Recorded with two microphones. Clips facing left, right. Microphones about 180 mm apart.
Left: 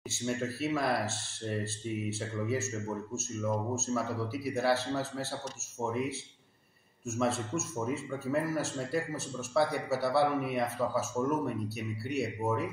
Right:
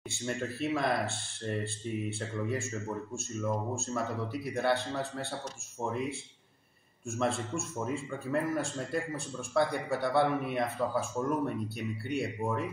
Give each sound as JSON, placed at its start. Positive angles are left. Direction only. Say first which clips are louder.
{"t": 0.1, "sound": "speech", "louder": "left 2 dB", "side_deg": 5}
{"t": 12.4, "sound": "speech", "louder": "left 3 dB", "side_deg": 20}